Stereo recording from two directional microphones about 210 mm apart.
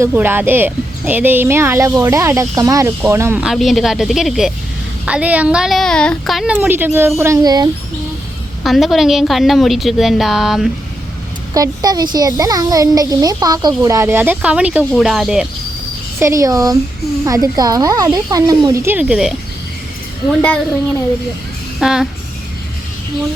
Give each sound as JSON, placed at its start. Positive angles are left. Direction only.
{"t": 0.0, "sound": "a woman's voice", "side_deg": -10}
{"t": 8.6, "sound": "a woman's voice", "side_deg": 0}
{"t": 11.5, "sound": "speech", "side_deg": -15}
{"t": 16.2, "sound": "speech", "side_deg": -15}
{"t": 21.8, "sound": "music", "side_deg": -5}